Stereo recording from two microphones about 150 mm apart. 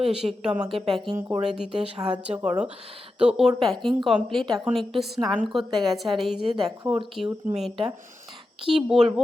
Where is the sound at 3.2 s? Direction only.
5° right (ahead or behind).